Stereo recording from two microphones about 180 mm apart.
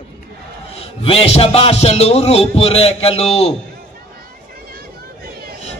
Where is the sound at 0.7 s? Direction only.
30° left (ahead or behind).